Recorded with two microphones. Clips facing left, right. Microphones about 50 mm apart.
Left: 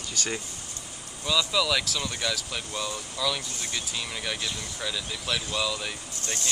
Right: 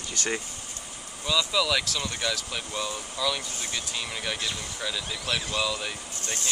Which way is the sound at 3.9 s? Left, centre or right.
Centre.